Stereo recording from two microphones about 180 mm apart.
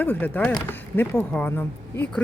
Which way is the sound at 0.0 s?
10° left (ahead or behind).